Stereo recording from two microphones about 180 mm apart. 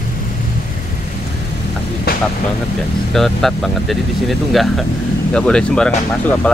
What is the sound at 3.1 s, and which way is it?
Speech, centre (ahead or behind).